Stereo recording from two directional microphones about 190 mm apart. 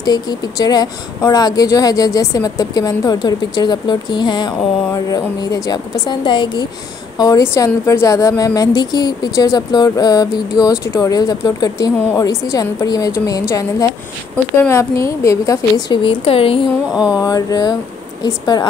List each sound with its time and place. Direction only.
0.0 s a woman's voice: 20° left (ahead or behind)
16.9 s a sound: 5° right (ahead or behind)
17.2 s speech: 20° left (ahead or behind)